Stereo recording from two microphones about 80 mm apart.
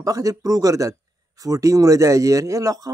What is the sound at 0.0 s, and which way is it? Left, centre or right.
A man's voice, right.